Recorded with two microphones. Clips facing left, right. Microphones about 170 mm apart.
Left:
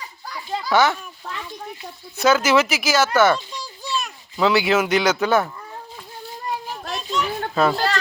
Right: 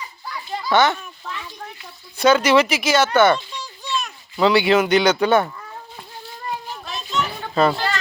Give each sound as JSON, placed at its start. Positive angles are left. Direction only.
{"t": 0.7, "sound": "a child's voice", "side_deg": 5}
{"t": 2.1, "sound": "speech", "side_deg": 5}
{"t": 3.6, "sound": "a sound", "side_deg": 35}
{"t": 4.0, "sound": "speech", "side_deg": 0}
{"t": 7.1, "sound": "children playing", "side_deg": 0}